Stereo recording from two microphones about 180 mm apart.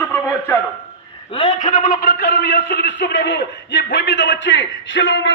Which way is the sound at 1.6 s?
45° left (ahead or behind).